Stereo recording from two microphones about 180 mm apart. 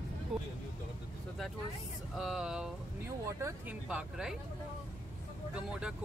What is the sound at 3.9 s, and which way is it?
Speech, 5° right (ahead or behind).